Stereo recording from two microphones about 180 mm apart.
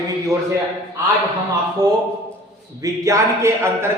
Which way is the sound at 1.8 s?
20° right (ahead or behind).